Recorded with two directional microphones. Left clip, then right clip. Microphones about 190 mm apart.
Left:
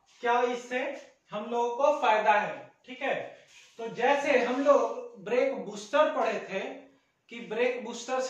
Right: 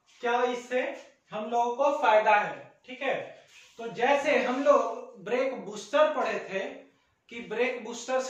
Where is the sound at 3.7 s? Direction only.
5° left (ahead or behind).